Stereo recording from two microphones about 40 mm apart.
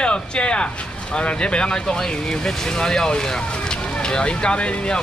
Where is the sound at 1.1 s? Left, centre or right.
Left.